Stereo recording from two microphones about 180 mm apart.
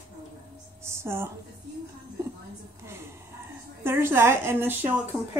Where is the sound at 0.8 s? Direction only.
15° right (ahead or behind).